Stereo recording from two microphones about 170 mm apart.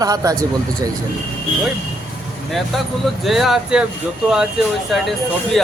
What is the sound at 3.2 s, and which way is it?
Speech, centre (ahead or behind).